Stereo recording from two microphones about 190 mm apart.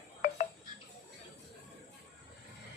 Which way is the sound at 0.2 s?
40° left (ahead or behind).